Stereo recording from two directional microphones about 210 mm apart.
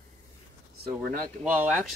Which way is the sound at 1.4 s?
5° right (ahead or behind).